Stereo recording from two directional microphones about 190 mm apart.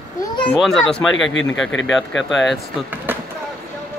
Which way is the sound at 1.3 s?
85° left.